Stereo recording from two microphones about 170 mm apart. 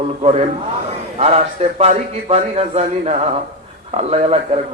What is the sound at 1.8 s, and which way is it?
A man's voice, 40° right (ahead or behind).